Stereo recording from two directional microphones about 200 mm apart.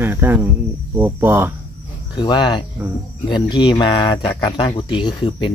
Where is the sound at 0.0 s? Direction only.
10° right (ahead or behind).